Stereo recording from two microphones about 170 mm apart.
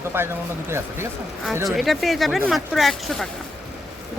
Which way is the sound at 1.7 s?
Centre (ahead or behind).